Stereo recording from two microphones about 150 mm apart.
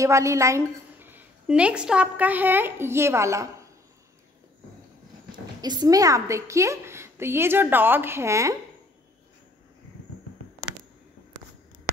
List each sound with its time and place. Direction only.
0.0 s a woman's voice: 20° right (ahead or behind)
5.6 s a woman's voice: 25° right (ahead or behind)